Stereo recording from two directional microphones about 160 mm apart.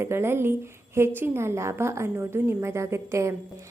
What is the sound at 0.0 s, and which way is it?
A woman's voice, 15° right (ahead or behind).